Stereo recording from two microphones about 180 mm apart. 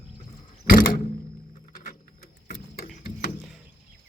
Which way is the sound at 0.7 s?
50° left (ahead or behind).